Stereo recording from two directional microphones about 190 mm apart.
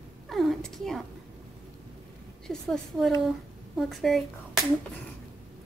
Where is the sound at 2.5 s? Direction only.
Centre (ahead or behind).